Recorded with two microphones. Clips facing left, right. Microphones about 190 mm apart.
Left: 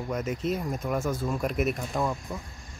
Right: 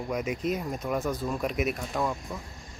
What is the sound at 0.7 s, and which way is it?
Speech, 5° left (ahead or behind).